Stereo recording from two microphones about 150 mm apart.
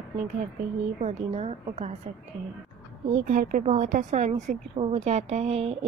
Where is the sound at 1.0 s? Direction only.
45° right (ahead or behind).